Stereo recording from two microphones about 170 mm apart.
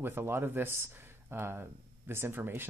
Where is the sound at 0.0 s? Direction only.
15° right (ahead or behind).